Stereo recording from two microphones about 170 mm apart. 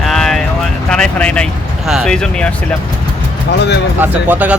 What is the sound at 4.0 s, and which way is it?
Speech, 10° right (ahead or behind).